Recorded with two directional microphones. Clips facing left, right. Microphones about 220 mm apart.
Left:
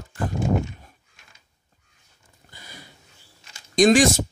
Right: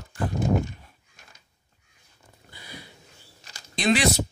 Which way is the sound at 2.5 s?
45° left (ahead or behind).